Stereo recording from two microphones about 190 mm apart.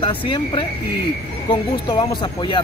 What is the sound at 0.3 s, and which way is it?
Speech, 25° left (ahead or behind).